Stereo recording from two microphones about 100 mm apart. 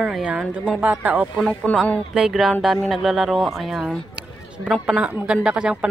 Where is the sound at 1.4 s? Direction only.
10° left (ahead or behind).